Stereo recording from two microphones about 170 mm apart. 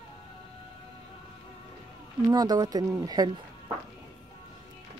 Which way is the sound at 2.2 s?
20° right (ahead or behind).